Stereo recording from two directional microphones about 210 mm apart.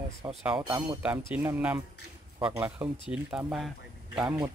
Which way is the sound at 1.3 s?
5° right (ahead or behind).